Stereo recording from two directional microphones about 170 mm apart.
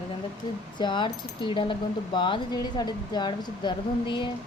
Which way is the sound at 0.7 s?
25° left (ahead or behind).